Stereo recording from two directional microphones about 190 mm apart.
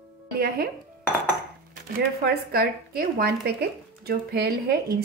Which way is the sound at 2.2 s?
55° right (ahead or behind).